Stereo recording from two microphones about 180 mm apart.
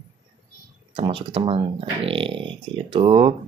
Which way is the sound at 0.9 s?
30° right (ahead or behind).